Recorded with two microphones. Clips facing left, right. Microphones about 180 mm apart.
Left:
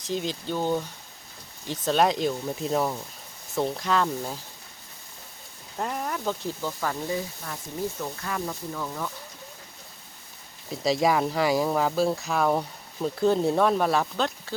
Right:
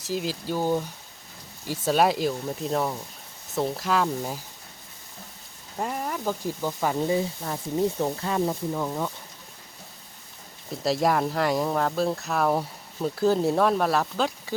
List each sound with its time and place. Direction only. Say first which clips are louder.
0.0 s speech: even; 5° right (ahead or behind)
5.7 s speech: right 1 dB; 5° right (ahead or behind); by 9.1 s 20° right (ahead or behind)
10.7 s speech: even; centre (ahead or behind)